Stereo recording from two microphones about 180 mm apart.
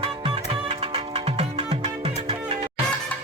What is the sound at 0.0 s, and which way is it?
Music, 30° right (ahead or behind).